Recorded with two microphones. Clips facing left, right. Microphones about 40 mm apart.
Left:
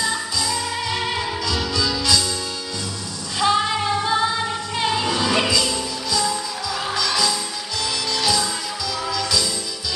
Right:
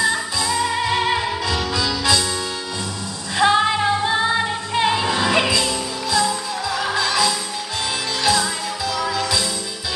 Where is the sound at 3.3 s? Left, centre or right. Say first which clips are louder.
Right 3 dB; right.